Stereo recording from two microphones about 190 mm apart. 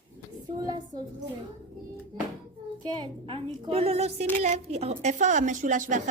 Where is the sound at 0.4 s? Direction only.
20° right (ahead or behind).